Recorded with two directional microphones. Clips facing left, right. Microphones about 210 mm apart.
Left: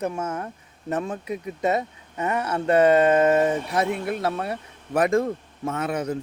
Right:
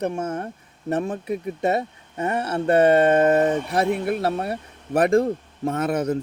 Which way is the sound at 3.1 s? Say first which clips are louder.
Right 1 dB; 45° right (ahead or behind).